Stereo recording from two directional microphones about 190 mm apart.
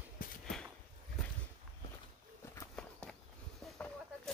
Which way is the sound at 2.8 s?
5° left (ahead or behind).